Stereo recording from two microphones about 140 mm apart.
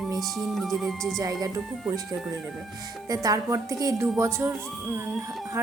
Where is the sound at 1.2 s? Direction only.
25° right (ahead or behind).